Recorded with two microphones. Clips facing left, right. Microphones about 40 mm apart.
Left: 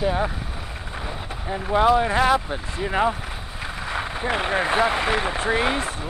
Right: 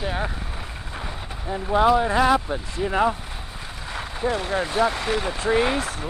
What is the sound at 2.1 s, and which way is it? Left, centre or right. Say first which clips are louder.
Speech: even; left.